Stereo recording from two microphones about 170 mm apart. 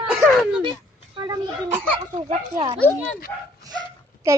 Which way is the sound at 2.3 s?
35° right (ahead or behind).